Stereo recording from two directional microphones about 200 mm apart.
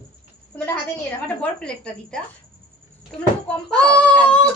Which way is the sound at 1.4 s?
5° left (ahead or behind).